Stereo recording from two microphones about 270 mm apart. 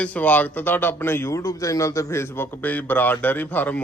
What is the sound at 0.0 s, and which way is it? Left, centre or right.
A man's voice, centre.